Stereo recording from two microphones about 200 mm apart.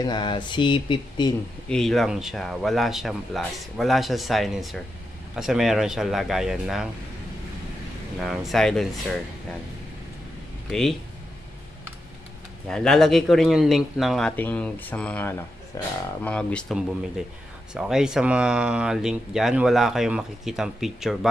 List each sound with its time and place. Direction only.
0.0 s speech: 20° left (ahead or behind)
1.7 s speech: centre (ahead or behind)
8.2 s speech: centre (ahead or behind)
10.7 s speech: centre (ahead or behind)
12.6 s speech: 5° left (ahead or behind)